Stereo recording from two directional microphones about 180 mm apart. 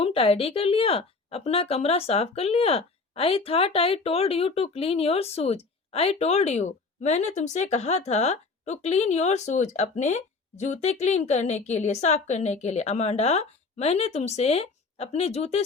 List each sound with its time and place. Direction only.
0.0 s speech: 30° left (ahead or behind)